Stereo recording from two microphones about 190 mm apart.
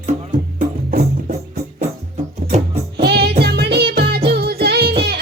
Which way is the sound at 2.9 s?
55° right (ahead or behind).